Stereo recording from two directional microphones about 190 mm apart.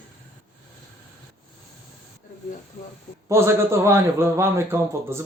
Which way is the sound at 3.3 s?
15° right (ahead or behind).